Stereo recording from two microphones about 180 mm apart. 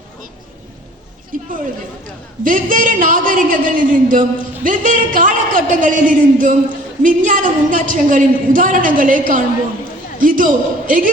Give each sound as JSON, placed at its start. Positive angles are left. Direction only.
{"t": 2.4, "sound": "a man's voice", "side_deg": -50}